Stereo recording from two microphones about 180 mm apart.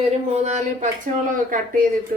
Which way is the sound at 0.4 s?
45° right (ahead or behind).